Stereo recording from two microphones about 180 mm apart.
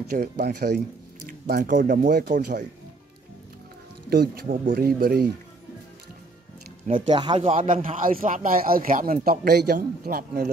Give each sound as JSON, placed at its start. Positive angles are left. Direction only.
{"t": 0.2, "sound": "speech", "side_deg": -65}
{"t": 1.5, "sound": "speech", "side_deg": -45}
{"t": 4.1, "sound": "speech", "side_deg": -55}
{"t": 6.9, "sound": "speech", "side_deg": -25}
{"t": 7.5, "sound": "speech", "side_deg": -50}